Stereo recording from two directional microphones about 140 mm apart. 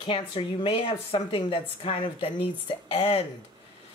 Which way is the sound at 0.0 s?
40° left (ahead or behind).